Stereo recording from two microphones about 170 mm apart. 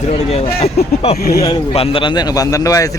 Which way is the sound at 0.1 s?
35° left (ahead or behind).